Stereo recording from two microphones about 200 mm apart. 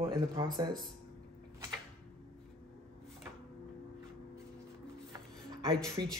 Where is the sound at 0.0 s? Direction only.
20° right (ahead or behind).